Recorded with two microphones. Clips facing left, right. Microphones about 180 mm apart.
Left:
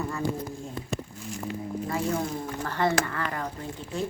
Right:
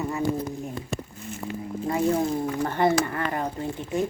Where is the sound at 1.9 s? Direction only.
25° right (ahead or behind).